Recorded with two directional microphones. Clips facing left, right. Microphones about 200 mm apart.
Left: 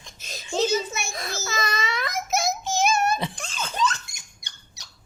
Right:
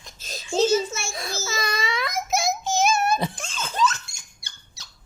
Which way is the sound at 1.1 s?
Centre (ahead or behind).